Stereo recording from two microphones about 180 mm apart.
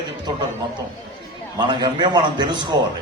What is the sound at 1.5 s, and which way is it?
A man's voice, 25° right (ahead or behind).